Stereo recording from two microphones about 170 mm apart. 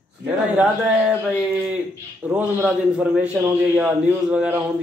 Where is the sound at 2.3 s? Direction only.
15° right (ahead or behind).